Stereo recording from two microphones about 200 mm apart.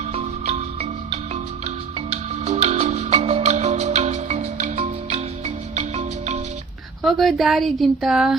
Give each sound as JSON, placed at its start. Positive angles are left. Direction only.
{"t": 0.1, "sound": "music", "side_deg": -35}
{"t": 7.0, "sound": "speech", "side_deg": 0}